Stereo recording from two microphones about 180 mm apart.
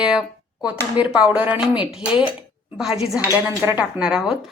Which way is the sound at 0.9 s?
5° right (ahead or behind).